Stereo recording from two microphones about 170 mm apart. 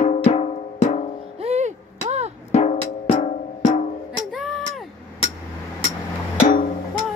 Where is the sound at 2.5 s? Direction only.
40° left (ahead or behind).